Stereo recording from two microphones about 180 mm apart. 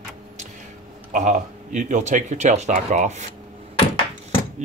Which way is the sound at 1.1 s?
45° right (ahead or behind).